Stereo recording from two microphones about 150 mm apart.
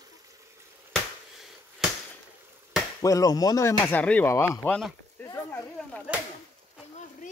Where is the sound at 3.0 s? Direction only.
25° left (ahead or behind).